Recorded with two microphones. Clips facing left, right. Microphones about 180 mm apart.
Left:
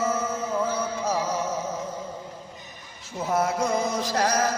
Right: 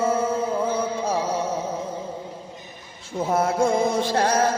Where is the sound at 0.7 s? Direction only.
30° right (ahead or behind).